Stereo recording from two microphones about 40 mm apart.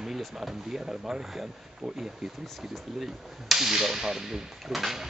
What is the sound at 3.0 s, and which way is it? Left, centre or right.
Speech, centre.